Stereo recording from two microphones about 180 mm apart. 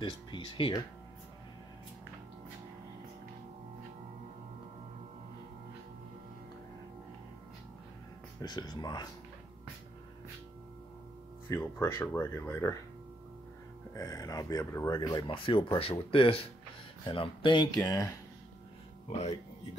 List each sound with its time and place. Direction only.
0.0 s speech: 25° left (ahead or behind)
8.4 s speech: 25° left (ahead or behind)
11.4 s speech: 15° left (ahead or behind)
13.9 s speech: 20° left (ahead or behind)
19.0 s speech: 35° left (ahead or behind)